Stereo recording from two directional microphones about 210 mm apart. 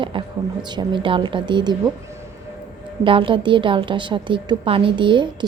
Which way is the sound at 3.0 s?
25° right (ahead or behind).